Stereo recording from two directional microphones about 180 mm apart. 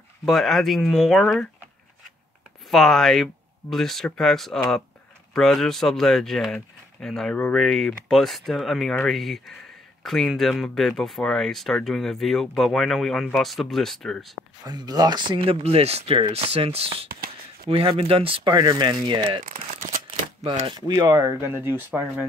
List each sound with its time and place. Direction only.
0.2 s speech: centre (ahead or behind)
2.7 s speech: centre (ahead or behind)
14.6 s speech: 20° right (ahead or behind)
17.1 s a sound: 55° right (ahead or behind)
17.6 s speech: 30° right (ahead or behind)
19.7 s a sound: 45° right (ahead or behind)
20.5 s speech: 25° right (ahead or behind); by 22.2 s 10° right (ahead or behind)